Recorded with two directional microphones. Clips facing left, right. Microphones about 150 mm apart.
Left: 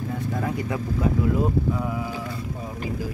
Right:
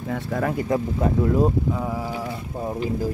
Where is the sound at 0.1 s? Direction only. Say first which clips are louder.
Right 5 dB; 80° right.